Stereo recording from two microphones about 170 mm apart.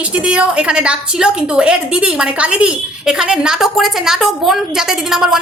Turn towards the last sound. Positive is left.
turn(degrees=-5)  # may be behind; listen again after turning